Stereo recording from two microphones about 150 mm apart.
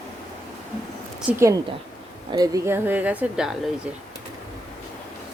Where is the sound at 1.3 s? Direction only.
20° right (ahead or behind).